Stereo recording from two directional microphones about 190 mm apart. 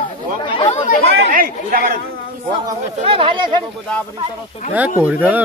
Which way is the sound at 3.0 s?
30° right (ahead or behind).